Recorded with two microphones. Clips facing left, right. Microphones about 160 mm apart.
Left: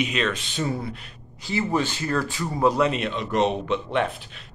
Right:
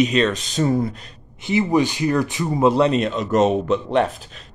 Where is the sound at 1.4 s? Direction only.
15° right (ahead or behind).